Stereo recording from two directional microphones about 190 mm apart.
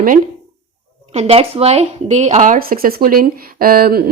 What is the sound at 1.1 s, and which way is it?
Speech, 30° right (ahead or behind).